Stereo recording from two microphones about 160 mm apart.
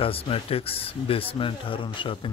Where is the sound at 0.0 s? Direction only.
35° left (ahead or behind).